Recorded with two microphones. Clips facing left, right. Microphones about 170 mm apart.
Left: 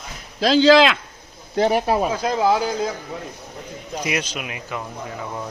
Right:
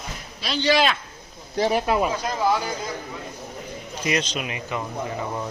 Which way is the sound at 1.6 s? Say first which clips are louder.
Left 2 dB; 35° left (ahead or behind).